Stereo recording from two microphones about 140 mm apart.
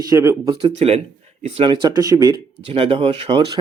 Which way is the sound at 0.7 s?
45° right (ahead or behind).